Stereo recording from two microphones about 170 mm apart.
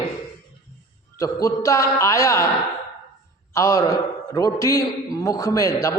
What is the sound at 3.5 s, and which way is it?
A man's voice, 20° left (ahead or behind).